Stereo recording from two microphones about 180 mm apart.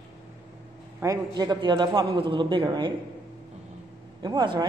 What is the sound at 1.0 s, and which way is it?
A man's voice, 20° right (ahead or behind).